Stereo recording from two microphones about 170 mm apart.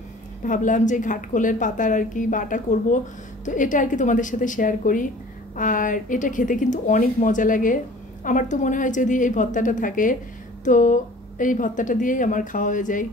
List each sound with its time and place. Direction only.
0.4 s speech: 50° left (ahead or behind)